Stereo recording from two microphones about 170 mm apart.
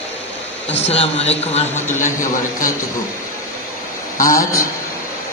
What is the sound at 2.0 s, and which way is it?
Speech, 50° left (ahead or behind).